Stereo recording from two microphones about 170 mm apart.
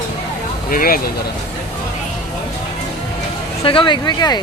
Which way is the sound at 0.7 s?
55° left (ahead or behind).